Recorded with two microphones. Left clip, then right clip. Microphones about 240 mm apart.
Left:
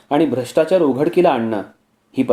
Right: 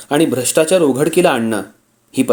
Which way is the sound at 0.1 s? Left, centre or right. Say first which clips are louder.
Right 2 dB; right.